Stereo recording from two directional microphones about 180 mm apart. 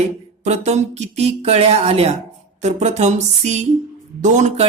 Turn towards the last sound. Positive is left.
turn(degrees=-40)  # may be behind; listen again after turning